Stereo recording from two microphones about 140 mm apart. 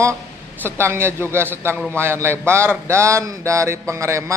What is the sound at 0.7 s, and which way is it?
Speech, 15° right (ahead or behind).